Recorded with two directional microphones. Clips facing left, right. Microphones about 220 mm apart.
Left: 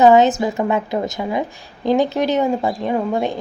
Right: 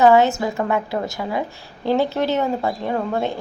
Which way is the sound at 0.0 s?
20° left (ahead or behind).